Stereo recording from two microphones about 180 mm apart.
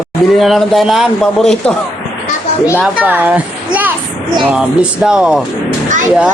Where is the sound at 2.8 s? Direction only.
10° right (ahead or behind).